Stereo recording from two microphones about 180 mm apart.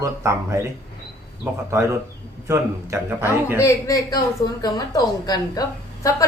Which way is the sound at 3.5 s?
15° left (ahead or behind).